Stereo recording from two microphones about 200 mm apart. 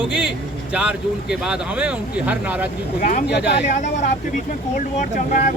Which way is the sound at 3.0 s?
40° left (ahead or behind).